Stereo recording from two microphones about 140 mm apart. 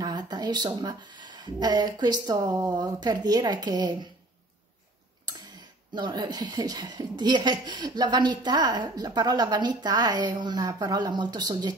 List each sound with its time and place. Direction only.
0.0 s a woman's voice: 30° right (ahead or behind)
5.9 s a woman's voice: 30° right (ahead or behind)